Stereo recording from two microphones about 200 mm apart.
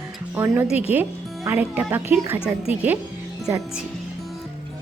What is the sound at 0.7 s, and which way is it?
Speech, 30° left (ahead or behind).